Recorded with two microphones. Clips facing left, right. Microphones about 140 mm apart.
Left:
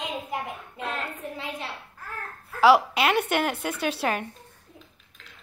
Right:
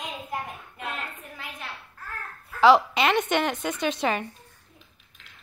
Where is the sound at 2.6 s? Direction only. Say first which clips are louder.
Even; 10° left (ahead or behind).